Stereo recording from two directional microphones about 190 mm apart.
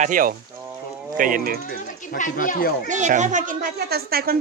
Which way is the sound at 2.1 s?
45° left (ahead or behind).